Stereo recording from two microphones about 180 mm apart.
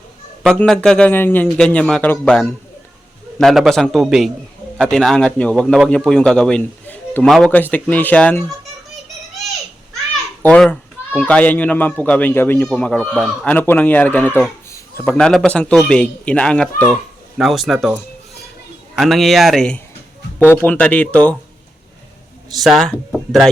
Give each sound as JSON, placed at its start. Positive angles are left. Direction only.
{"t": 0.4, "sound": "speech", "side_deg": 5}
{"t": 10.4, "sound": "speech", "side_deg": 5}
{"t": 22.4, "sound": "speech", "side_deg": 0}